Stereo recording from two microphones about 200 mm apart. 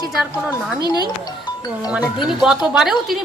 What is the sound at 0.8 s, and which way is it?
Speech, 20° left (ahead or behind).